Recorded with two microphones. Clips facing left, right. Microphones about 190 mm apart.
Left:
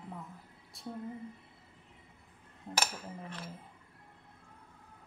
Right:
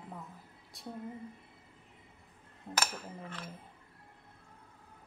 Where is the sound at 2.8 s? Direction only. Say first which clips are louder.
Even; centre (ahead or behind).